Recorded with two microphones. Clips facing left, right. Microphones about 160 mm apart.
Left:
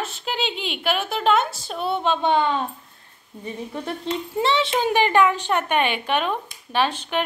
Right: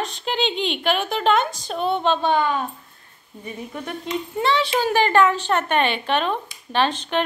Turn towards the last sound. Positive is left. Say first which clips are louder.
# right 1 dB
turn(degrees=10)  # may be behind; listen again after turning